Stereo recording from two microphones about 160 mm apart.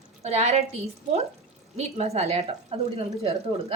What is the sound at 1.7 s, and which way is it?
A woman's voice, 40° right (ahead or behind).